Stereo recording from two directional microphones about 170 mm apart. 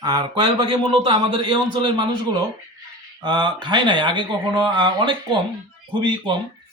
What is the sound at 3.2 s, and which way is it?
Speech, 25° right (ahead or behind).